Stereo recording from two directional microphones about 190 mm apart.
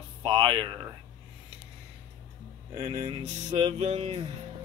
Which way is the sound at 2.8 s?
30° right (ahead or behind).